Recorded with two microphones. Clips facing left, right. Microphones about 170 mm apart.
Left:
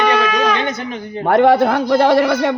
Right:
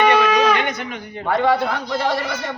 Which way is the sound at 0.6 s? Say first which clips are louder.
Left 3 dB; 30° left (ahead or behind).